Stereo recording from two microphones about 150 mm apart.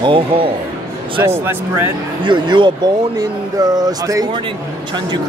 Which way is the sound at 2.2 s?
30° right (ahead or behind).